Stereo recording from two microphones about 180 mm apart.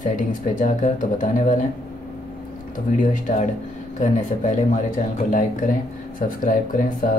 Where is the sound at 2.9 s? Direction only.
45° left (ahead or behind).